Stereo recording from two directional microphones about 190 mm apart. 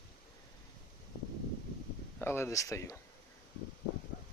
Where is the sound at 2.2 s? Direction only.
10° left (ahead or behind).